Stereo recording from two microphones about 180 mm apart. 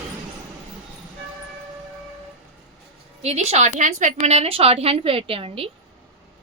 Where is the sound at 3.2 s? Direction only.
35° right (ahead or behind).